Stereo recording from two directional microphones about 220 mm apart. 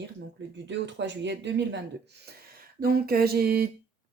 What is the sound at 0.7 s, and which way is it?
Speech, 55° right (ahead or behind).